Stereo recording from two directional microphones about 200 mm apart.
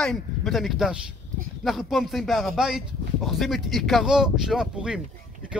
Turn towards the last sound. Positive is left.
turn(degrees=-5)  # may be behind; listen again after turning